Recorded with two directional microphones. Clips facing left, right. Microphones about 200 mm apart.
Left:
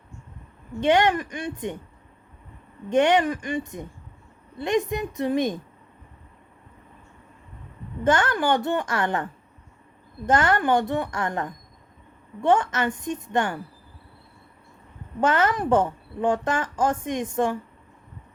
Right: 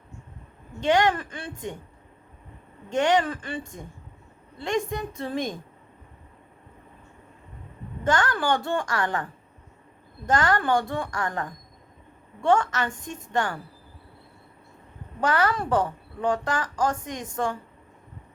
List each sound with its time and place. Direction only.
0.8 s a woman's voice: 20° left (ahead or behind)
2.9 s a woman's voice: 20° left (ahead or behind)
8.0 s a woman's voice: 20° left (ahead or behind)
10.2 s a woman's voice: 20° left (ahead or behind)
15.2 s a woman's voice: 20° left (ahead or behind)